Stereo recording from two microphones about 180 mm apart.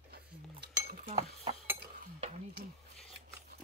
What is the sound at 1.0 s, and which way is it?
Cutlery, 35° right (ahead or behind).